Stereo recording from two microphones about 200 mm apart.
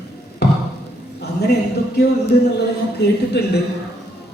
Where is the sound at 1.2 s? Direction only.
55° left (ahead or behind).